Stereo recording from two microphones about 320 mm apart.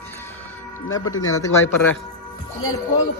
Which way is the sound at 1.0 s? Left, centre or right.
Left.